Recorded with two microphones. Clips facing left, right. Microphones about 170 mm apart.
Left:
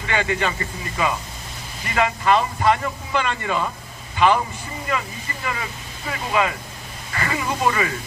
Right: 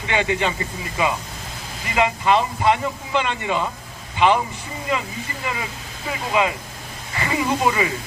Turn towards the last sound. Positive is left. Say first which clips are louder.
# right 2 dB
turn(degrees=-15)  # may be behind; listen again after turning